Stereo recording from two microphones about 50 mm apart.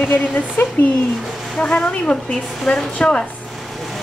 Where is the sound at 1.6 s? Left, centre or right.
Left.